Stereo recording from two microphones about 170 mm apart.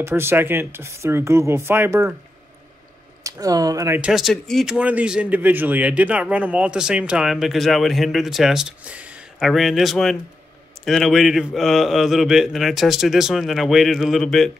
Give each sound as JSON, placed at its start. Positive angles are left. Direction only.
{"t": 0.0, "sound": "speech", "side_deg": -15}
{"t": 3.3, "sound": "speech", "side_deg": -20}
{"t": 4.1, "sound": "speech", "side_deg": 0}